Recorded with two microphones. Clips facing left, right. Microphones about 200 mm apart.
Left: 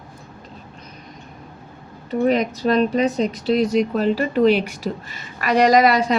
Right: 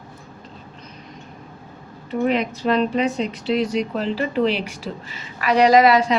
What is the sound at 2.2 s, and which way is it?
A woman's voice, 40° left (ahead or behind).